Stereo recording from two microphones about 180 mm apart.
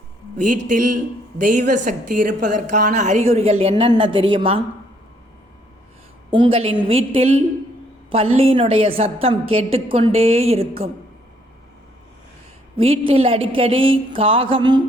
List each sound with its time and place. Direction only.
0.3 s a woman's voice: 45° right (ahead or behind); by 4.6 s 30° right (ahead or behind)
6.3 s a woman's voice: 30° right (ahead or behind)
12.7 s a woman's voice: 30° right (ahead or behind)